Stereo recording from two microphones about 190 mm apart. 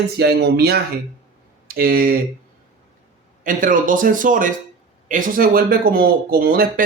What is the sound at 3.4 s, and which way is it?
Speech, 45° right (ahead or behind).